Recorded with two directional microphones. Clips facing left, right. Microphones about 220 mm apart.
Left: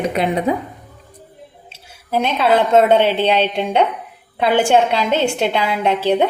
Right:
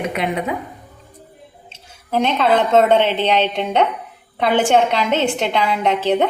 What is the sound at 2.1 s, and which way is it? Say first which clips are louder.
A woman's voice: even; 10° left (ahead or behind).